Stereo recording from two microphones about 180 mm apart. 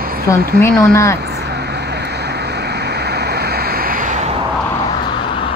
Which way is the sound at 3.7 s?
50° right (ahead or behind).